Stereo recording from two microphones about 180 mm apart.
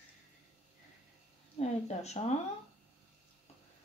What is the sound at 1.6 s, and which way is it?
Speech, 40° left (ahead or behind).